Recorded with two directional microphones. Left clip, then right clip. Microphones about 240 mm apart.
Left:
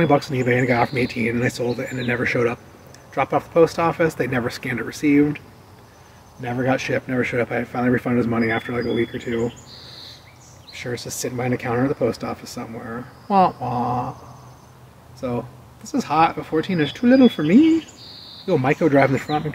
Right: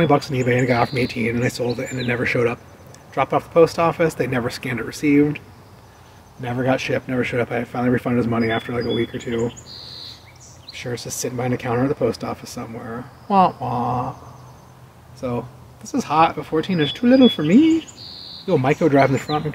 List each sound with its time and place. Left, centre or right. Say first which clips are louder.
0.0 s speech: right 1 dB; centre
6.4 s speech: right 1 dB; centre
10.7 s speech: even; centre
15.1 s speech: even; centre